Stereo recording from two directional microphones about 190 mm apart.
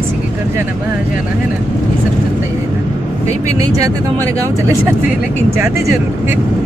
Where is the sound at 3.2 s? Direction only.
15° right (ahead or behind).